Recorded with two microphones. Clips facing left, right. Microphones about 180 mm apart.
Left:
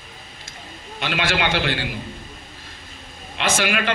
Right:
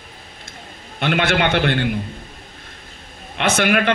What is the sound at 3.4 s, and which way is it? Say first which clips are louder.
Speech: right 5 dB; 60° right (ahead or behind).